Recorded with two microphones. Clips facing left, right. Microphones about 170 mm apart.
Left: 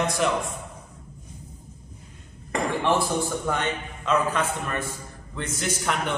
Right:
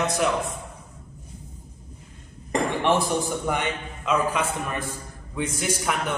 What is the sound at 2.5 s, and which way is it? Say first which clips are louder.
A man's voice: right 1 dB; 20° right (ahead or behind).